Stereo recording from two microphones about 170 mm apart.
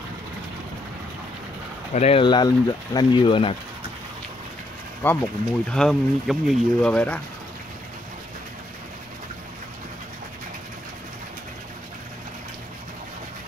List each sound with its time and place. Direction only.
2.0 s speech: 35° left (ahead or behind)
5.0 s speech: 10° left (ahead or behind)